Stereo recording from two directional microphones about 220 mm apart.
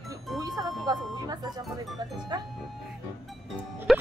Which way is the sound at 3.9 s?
Centre (ahead or behind).